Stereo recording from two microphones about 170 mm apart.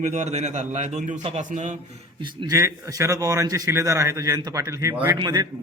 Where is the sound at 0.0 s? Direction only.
40° right (ahead or behind).